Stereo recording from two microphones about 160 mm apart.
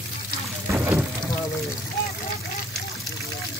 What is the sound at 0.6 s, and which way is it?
Water, 10° right (ahead or behind).